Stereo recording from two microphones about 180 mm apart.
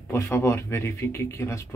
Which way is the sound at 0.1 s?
15° left (ahead or behind).